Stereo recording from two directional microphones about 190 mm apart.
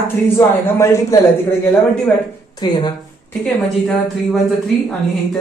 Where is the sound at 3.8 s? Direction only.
Centre (ahead or behind).